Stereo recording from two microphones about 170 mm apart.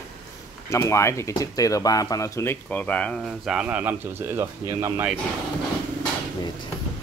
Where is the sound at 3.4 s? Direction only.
5° right (ahead or behind).